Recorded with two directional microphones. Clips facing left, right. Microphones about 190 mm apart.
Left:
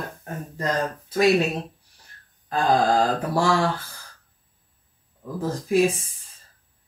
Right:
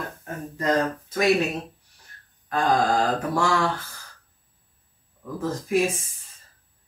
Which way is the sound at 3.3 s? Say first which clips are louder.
Left 3 dB; 30° left (ahead or behind).